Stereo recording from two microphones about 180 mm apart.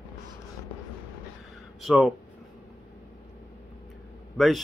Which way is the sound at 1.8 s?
Centre (ahead or behind).